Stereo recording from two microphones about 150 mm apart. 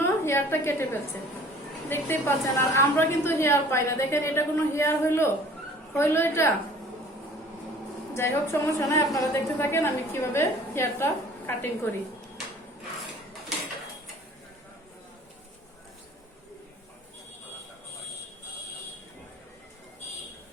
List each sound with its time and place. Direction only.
0.0 s a sound: 15° left (ahead or behind)
1.9 s a woman's voice: 15° left (ahead or behind)
8.1 s a woman's voice: 15° left (ahead or behind)